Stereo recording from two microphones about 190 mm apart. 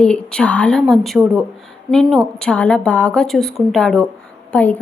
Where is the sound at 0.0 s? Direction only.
5° left (ahead or behind).